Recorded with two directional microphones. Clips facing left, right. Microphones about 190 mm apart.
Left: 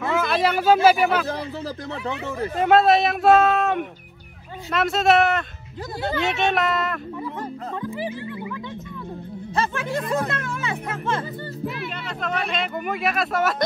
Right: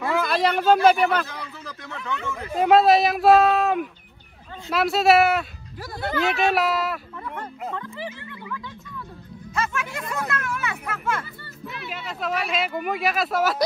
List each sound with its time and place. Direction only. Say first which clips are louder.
0.0 s a sound: left 1 dB; centre (ahead or behind)
0.8 s speech: left 1 dB; 5° left (ahead or behind)
1.2 s a sound: left 8 dB; 35° left (ahead or behind)
2.5 s speech: right 1 dB; centre (ahead or behind)
7.3 s speech: left 2 dB; 15° left (ahead or behind)
9.6 s speech: left 3 dB; 30° left (ahead or behind)
11.9 s speech: even; centre (ahead or behind)